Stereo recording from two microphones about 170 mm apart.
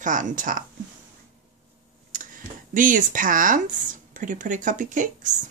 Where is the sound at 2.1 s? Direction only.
50° right (ahead or behind).